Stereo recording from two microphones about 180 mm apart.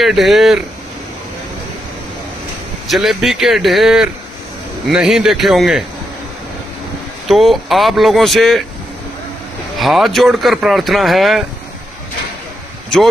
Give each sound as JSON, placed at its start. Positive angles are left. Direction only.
{"t": 0.0, "sound": "speech", "side_deg": 0}
{"t": 2.9, "sound": "speech", "side_deg": 0}
{"t": 7.2, "sound": "speech", "side_deg": 0}
{"t": 9.8, "sound": "speech", "side_deg": 0}